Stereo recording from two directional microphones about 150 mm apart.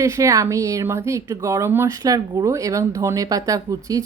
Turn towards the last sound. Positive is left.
turn(degrees=-25)  # may be behind; listen again after turning